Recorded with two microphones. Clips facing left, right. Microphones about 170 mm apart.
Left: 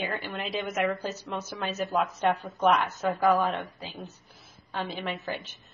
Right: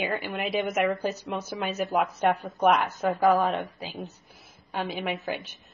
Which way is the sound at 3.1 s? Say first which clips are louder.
Right 2 dB; centre (ahead or behind).